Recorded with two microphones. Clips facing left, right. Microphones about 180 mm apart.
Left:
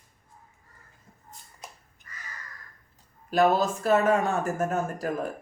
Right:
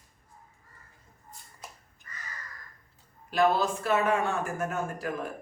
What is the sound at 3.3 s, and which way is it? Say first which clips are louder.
Speech: left 3 dB; 40° left (ahead or behind).